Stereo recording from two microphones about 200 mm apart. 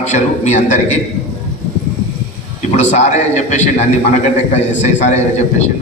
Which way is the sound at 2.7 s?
35° left (ahead or behind).